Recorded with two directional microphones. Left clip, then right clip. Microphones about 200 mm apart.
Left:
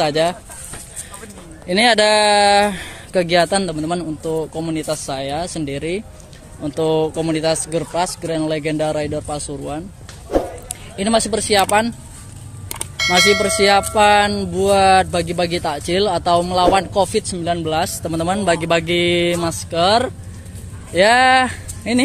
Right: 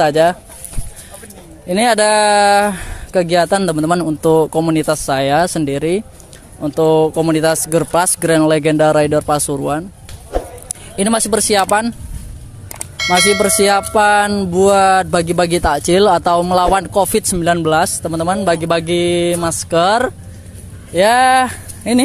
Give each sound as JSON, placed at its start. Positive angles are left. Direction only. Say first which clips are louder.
{"t": 0.0, "sound": "speech", "louder": "right 5 dB", "side_deg": -15}
{"t": 1.7, "sound": "speech", "louder": "right 1 dB", "side_deg": -15}
{"t": 10.3, "sound": "a sound", "louder": "left 3 dB", "side_deg": 0}
{"t": 11.0, "sound": "speech", "louder": "right 2 dB", "side_deg": -30}
{"t": 12.7, "sound": "vehicle", "louder": "right 1 dB", "side_deg": 0}
{"t": 13.6, "sound": "speech", "louder": "right 1 dB", "side_deg": -25}
{"t": 19.6, "sound": "speech", "louder": "right 3 dB", "side_deg": -30}
{"t": 20.9, "sound": "speech", "louder": "right 2 dB", "side_deg": -15}